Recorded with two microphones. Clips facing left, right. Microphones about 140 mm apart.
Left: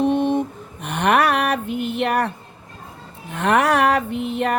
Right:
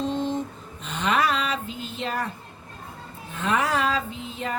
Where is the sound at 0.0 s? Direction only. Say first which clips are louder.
Left 8 dB; 65° left (ahead or behind).